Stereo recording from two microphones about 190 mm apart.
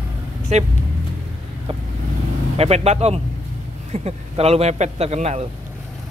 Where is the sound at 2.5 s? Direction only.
35° right (ahead or behind).